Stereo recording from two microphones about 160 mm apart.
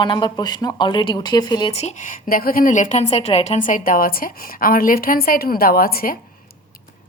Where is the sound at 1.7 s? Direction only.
45° left (ahead or behind); by 6.1 s 65° left (ahead or behind).